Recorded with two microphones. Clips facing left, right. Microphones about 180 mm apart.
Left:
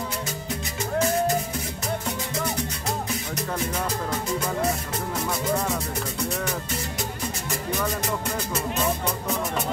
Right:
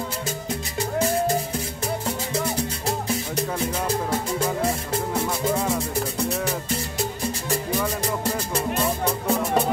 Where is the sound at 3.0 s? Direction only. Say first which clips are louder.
Right 4 dB; 30° right (ahead or behind).